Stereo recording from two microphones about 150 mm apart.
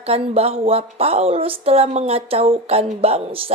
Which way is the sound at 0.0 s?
40° right (ahead or behind).